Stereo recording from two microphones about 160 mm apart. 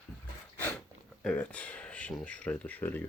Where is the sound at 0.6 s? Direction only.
10° left (ahead or behind).